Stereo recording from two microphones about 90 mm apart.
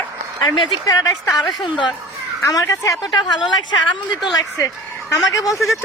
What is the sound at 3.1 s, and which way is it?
Speech, 55° left (ahead or behind).